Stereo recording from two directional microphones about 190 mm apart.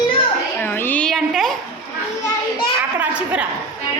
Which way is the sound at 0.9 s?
5° left (ahead or behind).